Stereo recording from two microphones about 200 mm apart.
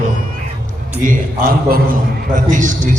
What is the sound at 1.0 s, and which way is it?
A man's voice, 45° right (ahead or behind).